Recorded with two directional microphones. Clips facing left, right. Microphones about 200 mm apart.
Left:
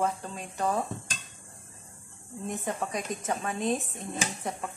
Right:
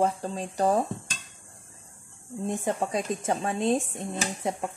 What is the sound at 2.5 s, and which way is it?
A woman's voice, 30° right (ahead or behind).